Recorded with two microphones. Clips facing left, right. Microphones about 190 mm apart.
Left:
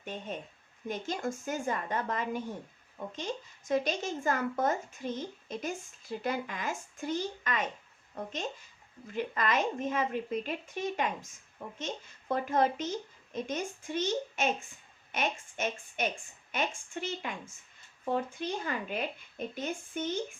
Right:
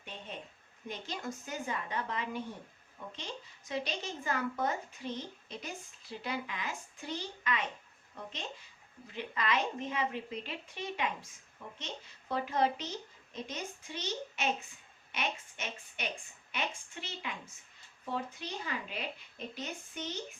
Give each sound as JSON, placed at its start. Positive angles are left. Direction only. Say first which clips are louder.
{"t": 0.0, "sound": "speech", "louder": "left 6 dB", "side_deg": 45}